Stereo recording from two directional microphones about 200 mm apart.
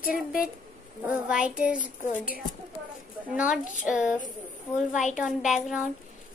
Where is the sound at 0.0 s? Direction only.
45° left (ahead or behind).